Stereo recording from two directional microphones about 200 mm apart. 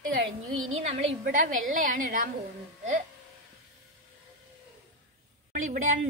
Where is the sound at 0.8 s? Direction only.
40° right (ahead or behind).